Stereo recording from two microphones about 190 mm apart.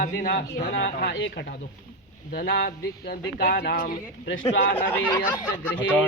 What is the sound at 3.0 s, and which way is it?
Speech, 65° left (ahead or behind).